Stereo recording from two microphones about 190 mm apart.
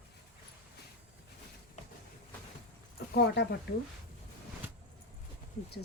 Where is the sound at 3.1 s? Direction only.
60° left (ahead or behind).